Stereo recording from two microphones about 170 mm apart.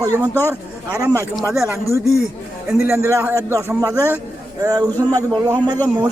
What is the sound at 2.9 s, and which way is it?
A man's voice, 15° right (ahead or behind).